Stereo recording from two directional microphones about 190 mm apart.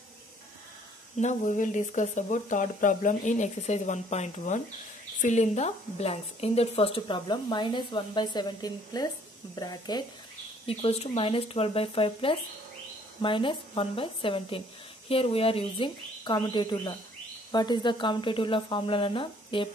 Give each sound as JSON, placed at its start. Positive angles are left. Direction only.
{"t": 1.2, "sound": "a woman's voice", "side_deg": 40}
{"t": 10.7, "sound": "a woman's voice", "side_deg": 30}